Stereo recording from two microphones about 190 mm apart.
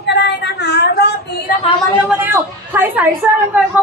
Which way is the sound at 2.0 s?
10° right (ahead or behind).